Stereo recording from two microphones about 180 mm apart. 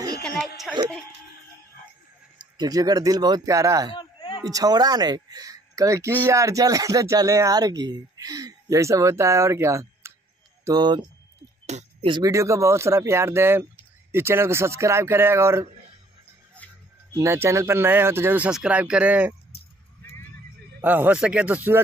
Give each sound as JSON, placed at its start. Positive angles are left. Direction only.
{"t": 0.7, "sound": "speech", "side_deg": 5}
{"t": 2.3, "sound": "speech", "side_deg": -25}
{"t": 3.9, "sound": "a sound", "side_deg": 25}
{"t": 4.5, "sound": "speech", "side_deg": -20}
{"t": 11.6, "sound": "music", "side_deg": -40}
{"t": 12.1, "sound": "speech", "side_deg": -20}
{"t": 17.1, "sound": "speech", "side_deg": -15}
{"t": 20.8, "sound": "speech", "side_deg": -10}